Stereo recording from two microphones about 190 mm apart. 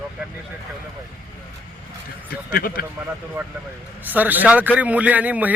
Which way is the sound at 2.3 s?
50° left (ahead or behind).